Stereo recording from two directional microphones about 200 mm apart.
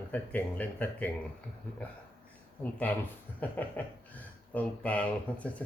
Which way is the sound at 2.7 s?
10° left (ahead or behind).